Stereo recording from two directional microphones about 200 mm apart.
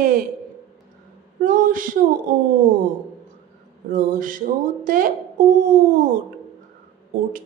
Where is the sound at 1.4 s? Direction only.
45° right (ahead or behind).